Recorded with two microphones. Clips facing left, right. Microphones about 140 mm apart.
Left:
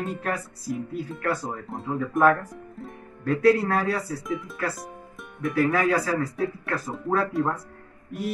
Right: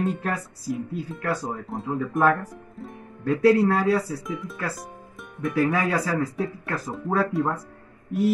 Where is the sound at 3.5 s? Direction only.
20° right (ahead or behind).